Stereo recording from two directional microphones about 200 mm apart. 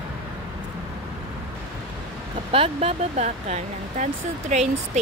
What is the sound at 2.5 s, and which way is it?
Speech, 30° right (ahead or behind).